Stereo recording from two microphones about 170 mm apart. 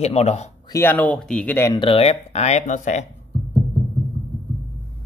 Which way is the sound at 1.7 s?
30° left (ahead or behind).